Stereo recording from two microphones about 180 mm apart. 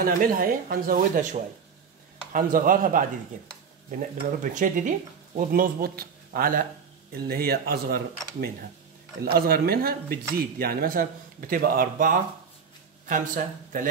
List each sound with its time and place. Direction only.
0.0 s speech: 50° right (ahead or behind)
4.4 s speech: 45° right (ahead or behind)